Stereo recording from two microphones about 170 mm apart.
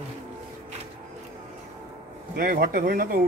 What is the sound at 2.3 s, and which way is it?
Speech, 60° right (ahead or behind).